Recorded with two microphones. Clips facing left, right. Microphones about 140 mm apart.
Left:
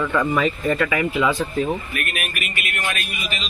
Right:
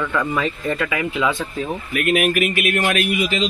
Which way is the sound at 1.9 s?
90° right.